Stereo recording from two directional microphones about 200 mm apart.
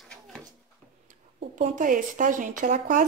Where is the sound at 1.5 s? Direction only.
40° right (ahead or behind).